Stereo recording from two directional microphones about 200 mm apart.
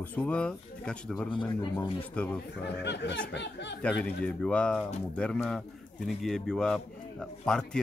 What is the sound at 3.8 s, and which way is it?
Speech, 5° left (ahead or behind).